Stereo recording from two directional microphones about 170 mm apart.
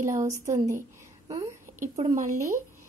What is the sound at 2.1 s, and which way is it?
Speech, 50° right (ahead or behind).